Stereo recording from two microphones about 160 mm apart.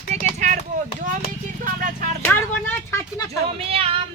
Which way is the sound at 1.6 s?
55° right (ahead or behind).